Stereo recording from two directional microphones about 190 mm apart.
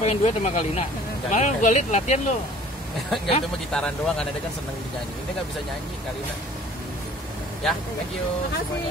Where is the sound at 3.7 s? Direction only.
5° left (ahead or behind).